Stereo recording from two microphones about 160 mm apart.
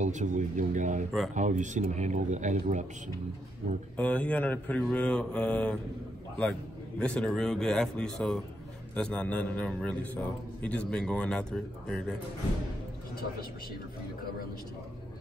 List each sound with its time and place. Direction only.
0.0 s speech: 50° right (ahead or behind)
3.9 s a man's voice: 10° left (ahead or behind)
7.0 s a man's voice: 5° left (ahead or behind)